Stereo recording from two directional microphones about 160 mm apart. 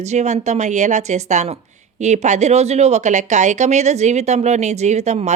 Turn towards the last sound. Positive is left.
turn(degrees=-45)  # may be behind; listen again after turning